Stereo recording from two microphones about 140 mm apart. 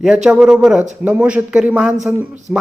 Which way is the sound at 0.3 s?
5° right (ahead or behind).